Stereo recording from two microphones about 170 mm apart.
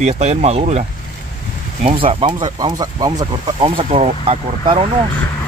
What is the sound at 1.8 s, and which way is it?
Speech, 35° right (ahead or behind).